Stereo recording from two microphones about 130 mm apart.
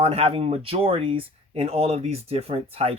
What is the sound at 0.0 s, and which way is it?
Speech, 50° right (ahead or behind).